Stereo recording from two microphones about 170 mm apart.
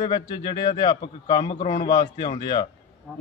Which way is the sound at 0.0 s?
30° left (ahead or behind).